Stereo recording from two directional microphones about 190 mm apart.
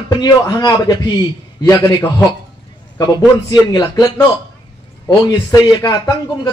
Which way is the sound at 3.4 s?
20° left (ahead or behind).